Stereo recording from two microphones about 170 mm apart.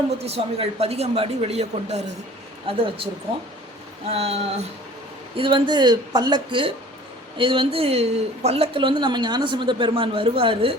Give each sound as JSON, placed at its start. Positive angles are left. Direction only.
{"t": 0.3, "sound": "a woman's voice", "side_deg": -35}
{"t": 4.1, "sound": "a woman's voice", "side_deg": -35}